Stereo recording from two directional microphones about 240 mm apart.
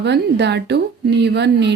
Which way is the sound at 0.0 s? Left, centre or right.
Right.